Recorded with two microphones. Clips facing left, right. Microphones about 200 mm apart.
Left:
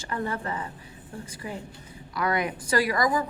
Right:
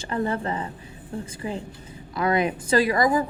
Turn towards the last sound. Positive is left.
turn(degrees=-25)  # may be behind; listen again after turning